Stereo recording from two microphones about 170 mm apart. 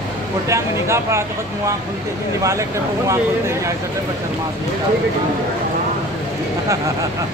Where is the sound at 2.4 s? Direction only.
15° right (ahead or behind).